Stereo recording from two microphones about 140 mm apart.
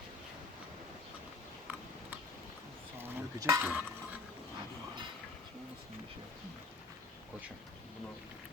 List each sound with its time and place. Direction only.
3.0 s stir: 25° right (ahead or behind)
3.6 s stir: 10° right (ahead or behind)